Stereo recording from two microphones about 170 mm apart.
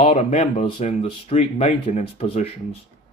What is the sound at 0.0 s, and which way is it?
Speech, 40° left (ahead or behind).